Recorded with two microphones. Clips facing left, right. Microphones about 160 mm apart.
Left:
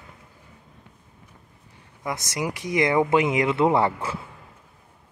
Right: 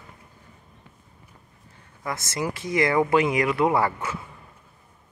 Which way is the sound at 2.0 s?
15° left (ahead or behind).